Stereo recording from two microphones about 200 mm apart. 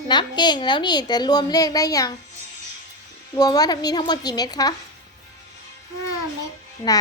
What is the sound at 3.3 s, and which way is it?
A woman's voice, 20° left (ahead or behind).